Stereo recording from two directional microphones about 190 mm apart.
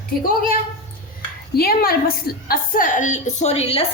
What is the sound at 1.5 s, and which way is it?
A woman's voice, 50° left (ahead or behind).